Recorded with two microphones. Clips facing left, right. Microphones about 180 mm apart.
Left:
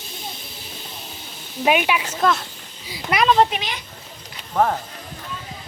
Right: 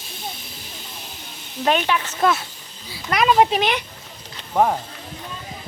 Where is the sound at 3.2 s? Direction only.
10° right (ahead or behind).